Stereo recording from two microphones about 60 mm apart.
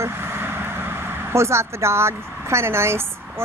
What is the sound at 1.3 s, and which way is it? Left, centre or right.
A woman's voice, right.